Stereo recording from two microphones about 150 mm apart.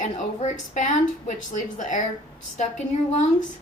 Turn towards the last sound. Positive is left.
turn(degrees=50)  # may be behind; listen again after turning